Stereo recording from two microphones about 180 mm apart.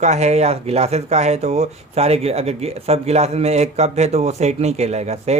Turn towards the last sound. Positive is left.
turn(degrees=-35)  # may be behind; listen again after turning